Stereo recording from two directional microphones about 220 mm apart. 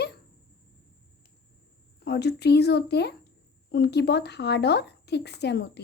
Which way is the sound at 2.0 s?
50° left (ahead or behind).